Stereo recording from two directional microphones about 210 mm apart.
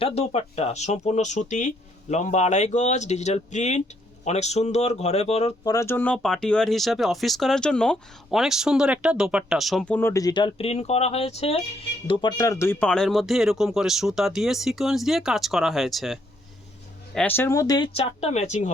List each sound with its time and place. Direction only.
0.0 s speech: 30° left (ahead or behind)
5.7 s speech: 10° left (ahead or behind)
17.9 s speech: 30° left (ahead or behind)